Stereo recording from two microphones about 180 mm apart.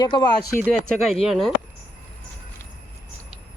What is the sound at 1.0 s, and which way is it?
Speech, centre (ahead or behind).